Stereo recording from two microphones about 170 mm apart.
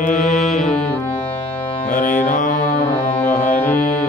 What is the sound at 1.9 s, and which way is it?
Music, 50° left (ahead or behind).